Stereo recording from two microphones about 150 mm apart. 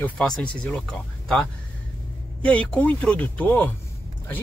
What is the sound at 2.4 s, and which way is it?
Speech, 5° left (ahead or behind).